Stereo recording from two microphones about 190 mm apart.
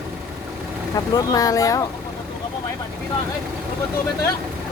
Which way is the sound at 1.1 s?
20° left (ahead or behind).